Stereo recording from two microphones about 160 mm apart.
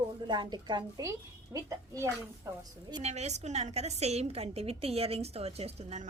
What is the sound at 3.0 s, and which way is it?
A woman's voice, 45° right (ahead or behind).